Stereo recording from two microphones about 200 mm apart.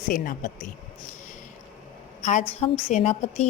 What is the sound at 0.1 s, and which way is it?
Speech, 40° left (ahead or behind).